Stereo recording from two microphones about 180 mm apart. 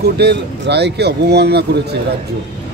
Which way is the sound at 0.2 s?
65° right (ahead or behind).